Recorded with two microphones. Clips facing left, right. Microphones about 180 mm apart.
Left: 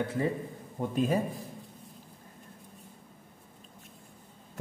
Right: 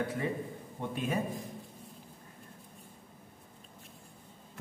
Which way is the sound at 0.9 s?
35° left (ahead or behind).